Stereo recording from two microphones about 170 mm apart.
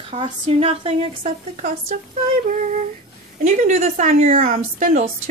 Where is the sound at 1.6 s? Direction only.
50° right (ahead or behind).